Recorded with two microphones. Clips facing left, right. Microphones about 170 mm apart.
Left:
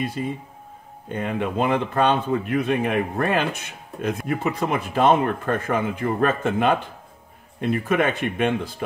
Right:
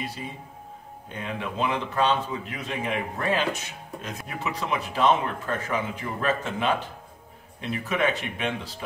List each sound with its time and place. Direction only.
1.0 s speech: 55° left (ahead or behind)